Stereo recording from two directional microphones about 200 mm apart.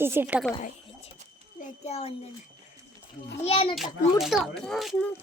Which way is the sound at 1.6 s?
30° left (ahead or behind).